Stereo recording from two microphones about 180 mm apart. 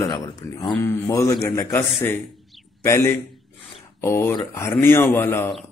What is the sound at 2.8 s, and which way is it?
Speech, 15° left (ahead or behind).